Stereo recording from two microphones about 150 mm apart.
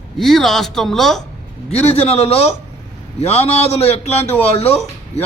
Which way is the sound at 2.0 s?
40° left (ahead or behind).